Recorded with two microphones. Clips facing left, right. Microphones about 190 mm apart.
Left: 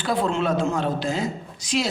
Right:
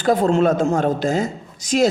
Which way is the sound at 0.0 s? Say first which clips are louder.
Right 7 dB; 45° right (ahead or behind).